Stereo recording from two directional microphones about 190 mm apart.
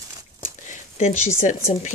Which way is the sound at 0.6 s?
40° left (ahead or behind).